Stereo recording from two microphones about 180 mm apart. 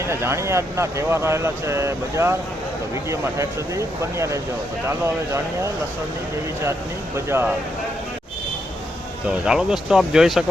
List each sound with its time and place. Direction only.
0.0 s speech: 15° right (ahead or behind)
7.3 s speech: 15° right (ahead or behind)
9.3 s speech: 5° right (ahead or behind)